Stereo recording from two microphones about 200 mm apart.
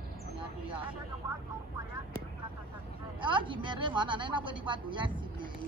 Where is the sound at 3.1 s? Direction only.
25° right (ahead or behind).